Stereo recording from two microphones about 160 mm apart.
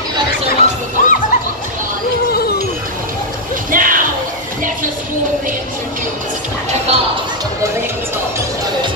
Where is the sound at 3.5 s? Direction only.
60° right (ahead or behind).